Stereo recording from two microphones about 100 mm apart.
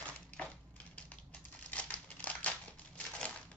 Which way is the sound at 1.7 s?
15° left (ahead or behind).